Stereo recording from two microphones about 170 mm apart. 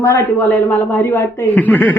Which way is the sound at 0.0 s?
15° left (ahead or behind).